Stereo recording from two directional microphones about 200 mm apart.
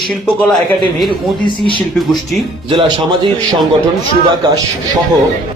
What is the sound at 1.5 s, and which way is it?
Speech, 25° left (ahead or behind).